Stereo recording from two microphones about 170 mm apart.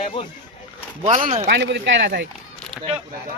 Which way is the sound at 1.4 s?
90° right.